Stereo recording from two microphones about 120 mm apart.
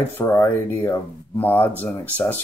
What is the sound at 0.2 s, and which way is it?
Speech, 20° left (ahead or behind).